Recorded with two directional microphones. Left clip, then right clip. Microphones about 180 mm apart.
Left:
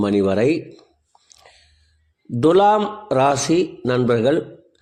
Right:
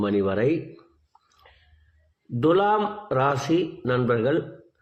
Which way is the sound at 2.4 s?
40° left (ahead or behind).